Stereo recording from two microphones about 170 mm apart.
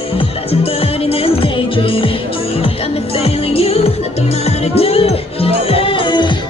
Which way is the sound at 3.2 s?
35° left (ahead or behind).